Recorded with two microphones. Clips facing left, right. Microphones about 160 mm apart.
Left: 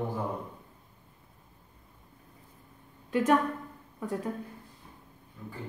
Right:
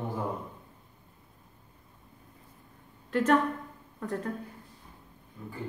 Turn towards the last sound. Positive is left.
turn(degrees=10)  # may be behind; listen again after turning